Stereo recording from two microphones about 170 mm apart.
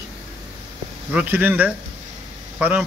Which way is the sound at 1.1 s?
10° right (ahead or behind).